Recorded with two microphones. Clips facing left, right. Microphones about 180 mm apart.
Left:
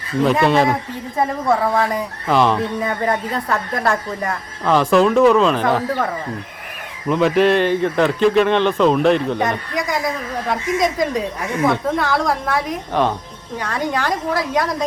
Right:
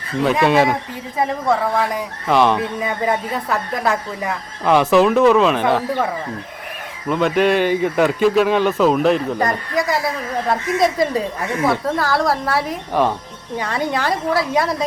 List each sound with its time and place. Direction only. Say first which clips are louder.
0.2 s speech: even; centre (ahead or behind)
7.1 s a woman's voice: left 1 dB; centre (ahead or behind)